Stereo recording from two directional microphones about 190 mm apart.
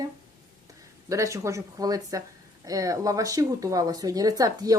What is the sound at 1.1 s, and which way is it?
Speech, 15° right (ahead or behind).